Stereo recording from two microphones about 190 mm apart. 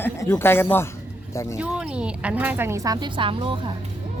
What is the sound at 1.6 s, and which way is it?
Speech, 5° right (ahead or behind).